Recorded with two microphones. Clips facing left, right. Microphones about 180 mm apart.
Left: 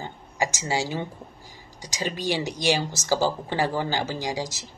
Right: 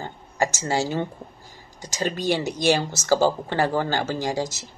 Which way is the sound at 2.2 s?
50° right (ahead or behind).